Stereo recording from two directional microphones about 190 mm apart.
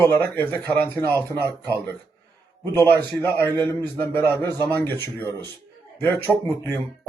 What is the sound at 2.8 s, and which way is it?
A man's voice, 10° left (ahead or behind).